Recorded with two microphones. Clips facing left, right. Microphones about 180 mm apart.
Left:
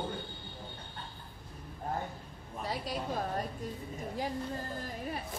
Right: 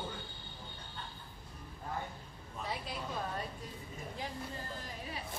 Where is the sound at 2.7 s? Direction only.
40° left (ahead or behind).